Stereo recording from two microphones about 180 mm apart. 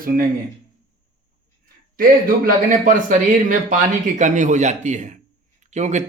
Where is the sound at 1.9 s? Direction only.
50° right (ahead or behind).